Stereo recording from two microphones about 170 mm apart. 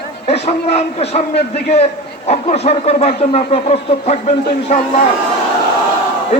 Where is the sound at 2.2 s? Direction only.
40° left (ahead or behind).